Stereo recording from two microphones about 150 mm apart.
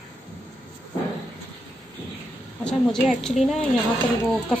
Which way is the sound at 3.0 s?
Centre (ahead or behind).